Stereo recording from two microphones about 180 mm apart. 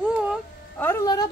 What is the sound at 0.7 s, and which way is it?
Speech, 10° left (ahead or behind).